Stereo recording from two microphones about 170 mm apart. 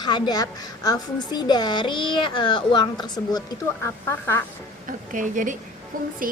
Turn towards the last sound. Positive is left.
turn(degrees=-55)  # may be behind; listen again after turning